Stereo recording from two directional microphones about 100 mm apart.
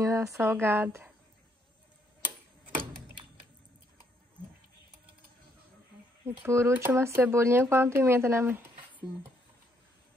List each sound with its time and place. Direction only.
0.0 s a woman's voice: 30° right (ahead or behind)
6.2 s speech: 25° right (ahead or behind)